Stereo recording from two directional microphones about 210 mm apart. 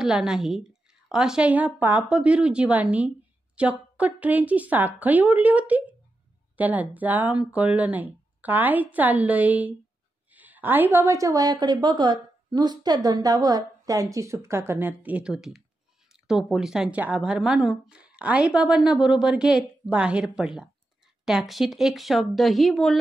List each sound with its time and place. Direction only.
0.0 s a woman's voice: centre (ahead or behind)